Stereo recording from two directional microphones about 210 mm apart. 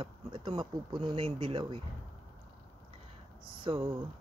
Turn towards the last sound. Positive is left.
turn(degrees=-25)  # may be behind; listen again after turning